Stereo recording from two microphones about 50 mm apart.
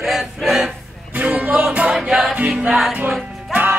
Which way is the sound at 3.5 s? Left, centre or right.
Right.